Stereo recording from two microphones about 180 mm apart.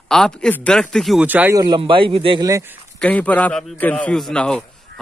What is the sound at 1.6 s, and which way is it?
A man's voice, 25° right (ahead or behind).